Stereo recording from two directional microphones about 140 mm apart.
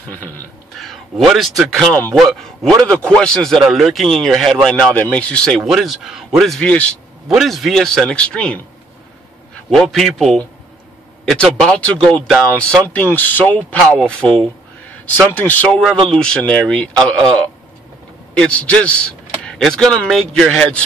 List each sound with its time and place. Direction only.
0.7 s a man's voice: centre (ahead or behind)
9.7 s a man's voice: centre (ahead or behind)